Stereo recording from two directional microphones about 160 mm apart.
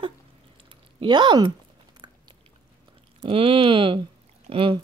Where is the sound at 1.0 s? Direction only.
30° right (ahead or behind).